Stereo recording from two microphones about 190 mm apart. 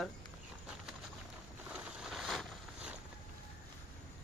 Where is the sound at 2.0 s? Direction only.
Centre (ahead or behind).